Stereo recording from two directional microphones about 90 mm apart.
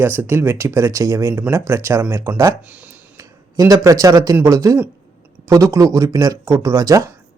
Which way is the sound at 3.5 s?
40° right (ahead or behind).